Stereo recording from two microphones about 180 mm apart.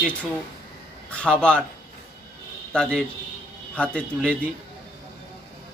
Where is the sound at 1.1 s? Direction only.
5° left (ahead or behind).